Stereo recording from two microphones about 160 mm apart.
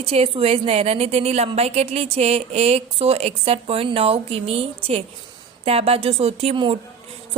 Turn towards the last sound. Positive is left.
turn(degrees=-35)  # may be behind; listen again after turning